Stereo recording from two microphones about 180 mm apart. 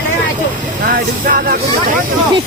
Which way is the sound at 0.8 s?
50° right (ahead or behind).